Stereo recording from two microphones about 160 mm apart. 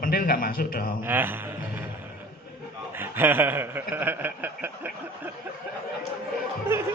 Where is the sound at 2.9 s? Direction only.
15° right (ahead or behind).